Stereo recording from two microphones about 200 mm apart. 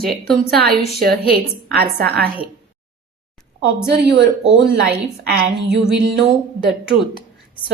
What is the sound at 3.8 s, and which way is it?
Speech, 60° right (ahead or behind).